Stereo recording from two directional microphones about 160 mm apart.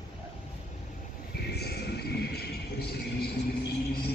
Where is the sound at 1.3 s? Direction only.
80° left.